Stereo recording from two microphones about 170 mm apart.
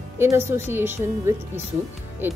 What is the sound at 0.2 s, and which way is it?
Speech, 15° right (ahead or behind).